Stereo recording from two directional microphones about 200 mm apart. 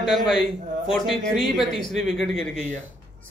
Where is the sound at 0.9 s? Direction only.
Centre (ahead or behind).